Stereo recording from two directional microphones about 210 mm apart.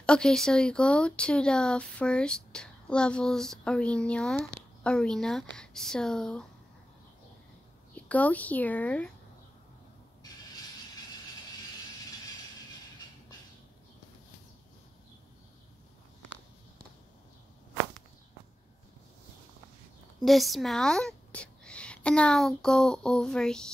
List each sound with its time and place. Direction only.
0.0 s speech: 5° left (ahead or behind)
7.9 s speech: 5° left (ahead or behind)
20.2 s a woman's voice: centre (ahead or behind)